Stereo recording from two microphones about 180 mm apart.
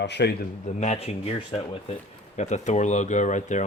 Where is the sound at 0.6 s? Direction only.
40° left (ahead or behind).